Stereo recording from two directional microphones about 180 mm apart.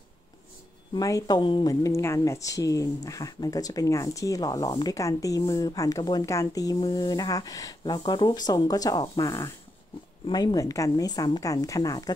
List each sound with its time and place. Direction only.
0.9 s speech: 20° left (ahead or behind)